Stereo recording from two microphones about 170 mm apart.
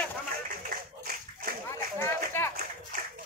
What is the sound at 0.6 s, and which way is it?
Clapping, 60° right (ahead or behind).